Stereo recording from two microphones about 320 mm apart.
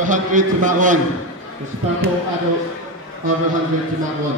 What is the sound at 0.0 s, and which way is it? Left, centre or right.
Speech, right.